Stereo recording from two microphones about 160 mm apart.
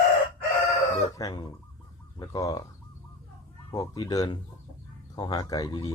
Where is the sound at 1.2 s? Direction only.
20° left (ahead or behind).